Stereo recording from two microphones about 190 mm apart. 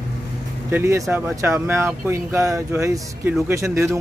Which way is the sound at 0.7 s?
15° right (ahead or behind).